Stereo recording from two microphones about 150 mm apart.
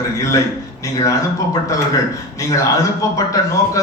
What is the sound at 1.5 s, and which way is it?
A man's voice, 25° left (ahead or behind).